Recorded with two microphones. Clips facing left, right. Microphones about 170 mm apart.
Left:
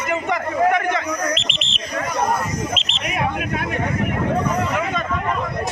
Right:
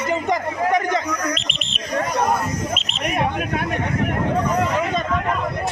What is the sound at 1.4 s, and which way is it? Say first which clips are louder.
Bird: left 1 dB; 45° right (ahead or behind).